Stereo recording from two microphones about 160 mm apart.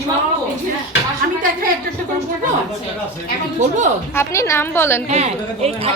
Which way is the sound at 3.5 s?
50° right (ahead or behind).